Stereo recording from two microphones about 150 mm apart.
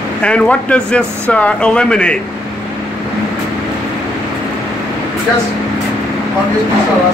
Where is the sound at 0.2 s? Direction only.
5° left (ahead or behind).